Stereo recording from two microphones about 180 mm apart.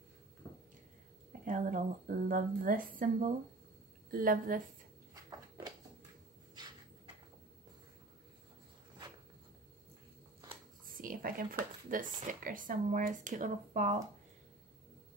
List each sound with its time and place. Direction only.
1.4 s speech: 45° right (ahead or behind)
11.0 s speech: 50° right (ahead or behind)